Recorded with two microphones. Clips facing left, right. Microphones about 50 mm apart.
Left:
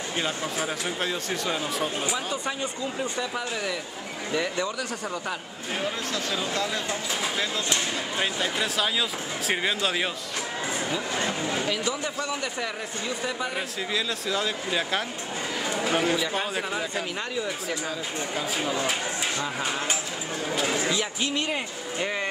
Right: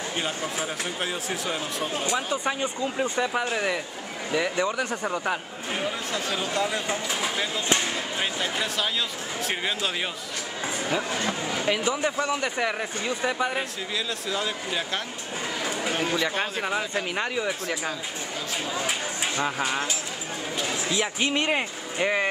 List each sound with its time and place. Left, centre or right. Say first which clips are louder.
0.2 s speech: left 2 dB; centre
2.3 s speech: right 3 dB; right
8.2 s speech: left 2 dB; centre
11.6 s speech: right 3 dB; right
13.6 s speech: left 1 dB; centre
16.0 s speech: right 1 dB; centre
16.6 s speech: right 2 dB; centre
19.3 s speech: right 2 dB; right
21.2 s speech: right 3 dB; right